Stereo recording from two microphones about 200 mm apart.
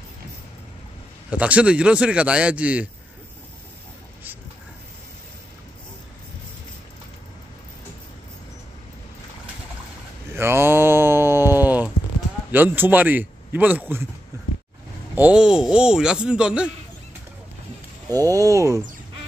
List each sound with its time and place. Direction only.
1.3 s speech: 5° right (ahead or behind)
10.3 s a sound: 10° right (ahead or behind)
12.4 s speech: 10° right (ahead or behind)
14.3 s a sound: 15° right (ahead or behind)
15.1 s speech: 5° right (ahead or behind)
18.1 s speech: 15° right (ahead or behind)